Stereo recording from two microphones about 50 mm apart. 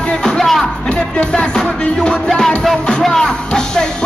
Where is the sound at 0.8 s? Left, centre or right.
Centre.